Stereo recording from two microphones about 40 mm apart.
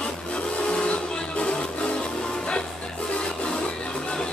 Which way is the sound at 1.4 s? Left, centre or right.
Left.